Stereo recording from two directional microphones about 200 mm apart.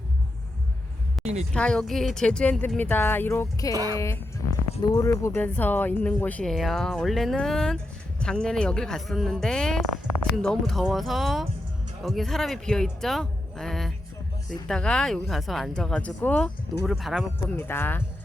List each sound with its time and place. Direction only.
1.2 s speech: 35° right (ahead or behind)
1.5 s speech: 5° left (ahead or behind)
4.4 s music: 90° left
4.8 s speech: 20° left (ahead or behind); by 17.2 s centre (ahead or behind)
17.6 s speech: 10° left (ahead or behind)